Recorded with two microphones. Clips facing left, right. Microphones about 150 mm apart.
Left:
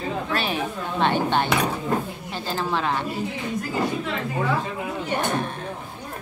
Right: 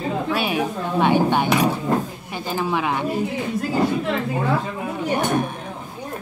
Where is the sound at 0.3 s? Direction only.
10° right (ahead or behind).